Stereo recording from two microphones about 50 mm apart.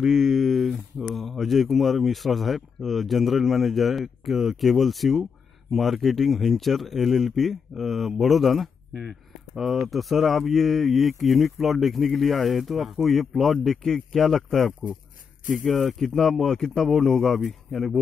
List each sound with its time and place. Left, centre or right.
0.1 s speech: centre
15.7 s speech: centre